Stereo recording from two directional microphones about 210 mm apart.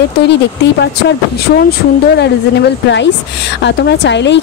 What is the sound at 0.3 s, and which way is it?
Speech, 55° left (ahead or behind).